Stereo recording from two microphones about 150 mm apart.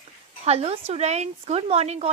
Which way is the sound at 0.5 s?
45° right (ahead or behind).